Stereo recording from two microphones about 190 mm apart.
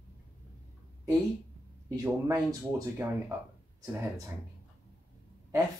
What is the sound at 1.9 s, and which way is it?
Speech, 20° right (ahead or behind).